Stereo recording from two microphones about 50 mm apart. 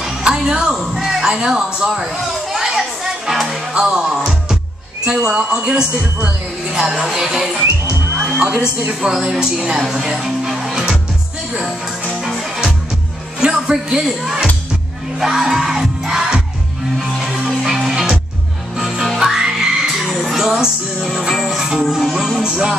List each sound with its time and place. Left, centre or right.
0.0 s music: centre
0.7 s a sound: centre
3.7 s music: centre
5.0 s a woman's voice: centre
9.0 s speech: centre
13.4 s speech: centre
15.1 s music: centre
22.4 s a woman's voice: centre